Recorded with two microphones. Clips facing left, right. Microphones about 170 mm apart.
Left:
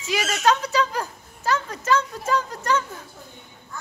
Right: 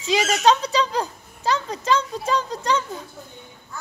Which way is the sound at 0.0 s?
20° right (ahead or behind).